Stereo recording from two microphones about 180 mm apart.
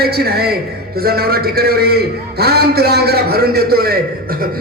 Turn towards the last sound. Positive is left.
turn(degrees=-60)  # may be behind; listen again after turning